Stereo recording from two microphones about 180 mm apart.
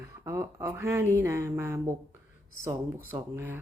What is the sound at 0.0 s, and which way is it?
Speech, 15° right (ahead or behind).